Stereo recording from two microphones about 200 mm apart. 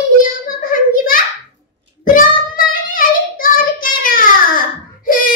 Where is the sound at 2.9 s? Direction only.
45° left (ahead or behind).